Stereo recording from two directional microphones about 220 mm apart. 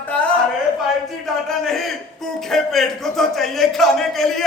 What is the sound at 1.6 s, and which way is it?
A man's voice, centre (ahead or behind).